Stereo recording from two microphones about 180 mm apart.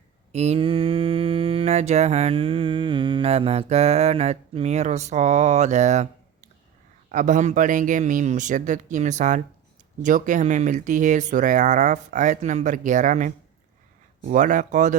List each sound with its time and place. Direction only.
0.3 s mantra: 35° right (ahead or behind)
7.1 s speech: 45° right (ahead or behind)